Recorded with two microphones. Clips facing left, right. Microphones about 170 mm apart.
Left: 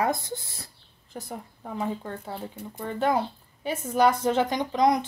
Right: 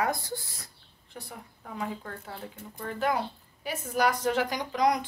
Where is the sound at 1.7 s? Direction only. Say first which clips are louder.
Left 5 dB; 25° left (ahead or behind).